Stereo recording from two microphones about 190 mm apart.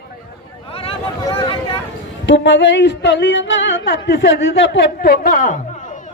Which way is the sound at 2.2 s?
70° left (ahead or behind).